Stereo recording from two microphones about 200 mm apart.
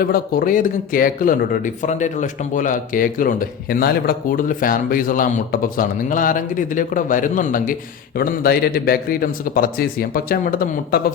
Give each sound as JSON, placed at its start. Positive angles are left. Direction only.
{"t": 0.0, "sound": "speech", "side_deg": 45}